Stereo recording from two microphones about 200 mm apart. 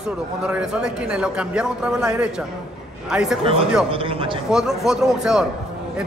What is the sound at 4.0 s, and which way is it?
Speech, 25° right (ahead or behind).